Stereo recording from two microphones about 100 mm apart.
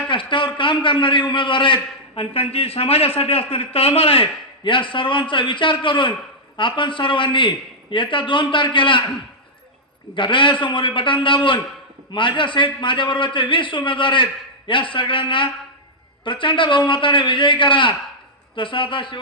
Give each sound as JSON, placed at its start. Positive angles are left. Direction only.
{"t": 0.1, "sound": "a man's voice", "side_deg": 55}
{"t": 10.2, "sound": "a man's voice", "side_deg": 55}